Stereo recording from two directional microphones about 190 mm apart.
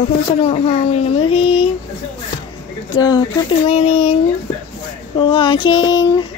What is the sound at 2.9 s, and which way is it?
Speech, 20° left (ahead or behind).